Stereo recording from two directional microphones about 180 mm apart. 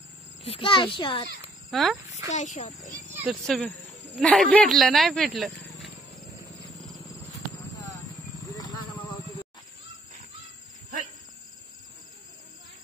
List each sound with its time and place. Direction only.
0.4 s a child's voice: 30° left (ahead or behind)
1.7 s speech: centre (ahead or behind)
2.3 s speech: 40° left (ahead or behind)
3.3 s a woman's voice: centre (ahead or behind)
7.8 s a sound: 20° left (ahead or behind)